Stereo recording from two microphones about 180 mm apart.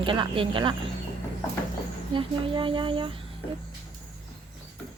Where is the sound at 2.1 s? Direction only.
30° right (ahead or behind).